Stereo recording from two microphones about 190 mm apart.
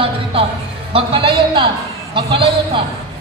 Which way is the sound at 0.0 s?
30° right (ahead or behind).